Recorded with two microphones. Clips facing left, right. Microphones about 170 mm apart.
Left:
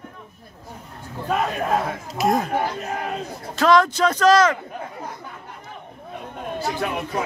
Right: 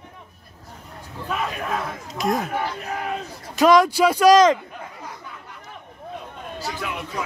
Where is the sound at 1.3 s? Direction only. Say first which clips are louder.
Left 5 dB; 40° left (ahead or behind).